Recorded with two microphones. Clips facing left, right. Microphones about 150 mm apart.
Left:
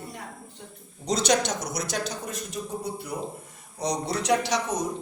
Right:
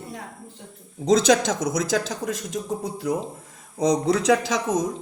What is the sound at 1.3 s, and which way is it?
Speech, 90° right.